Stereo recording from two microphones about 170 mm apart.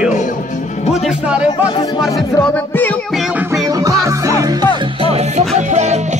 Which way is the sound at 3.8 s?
20° right (ahead or behind).